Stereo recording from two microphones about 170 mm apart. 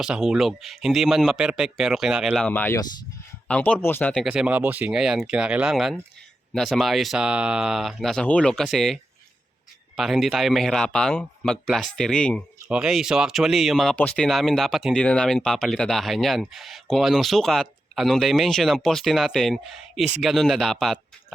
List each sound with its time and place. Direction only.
0.0 s speech: 5° right (ahead or behind)
2.5 s speech: 10° left (ahead or behind)